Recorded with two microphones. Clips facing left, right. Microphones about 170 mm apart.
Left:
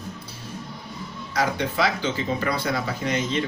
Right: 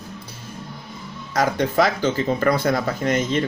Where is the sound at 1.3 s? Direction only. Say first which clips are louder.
Right 5 dB; 45° right (ahead or behind).